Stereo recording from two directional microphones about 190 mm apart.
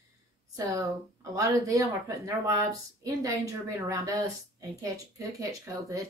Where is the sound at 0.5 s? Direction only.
15° right (ahead or behind).